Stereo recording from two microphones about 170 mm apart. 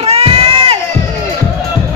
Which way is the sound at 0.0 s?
35° right (ahead or behind).